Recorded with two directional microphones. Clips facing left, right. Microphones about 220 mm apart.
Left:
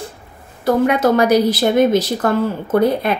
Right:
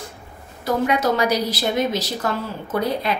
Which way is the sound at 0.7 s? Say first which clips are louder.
Left 6 dB; 55° left (ahead or behind).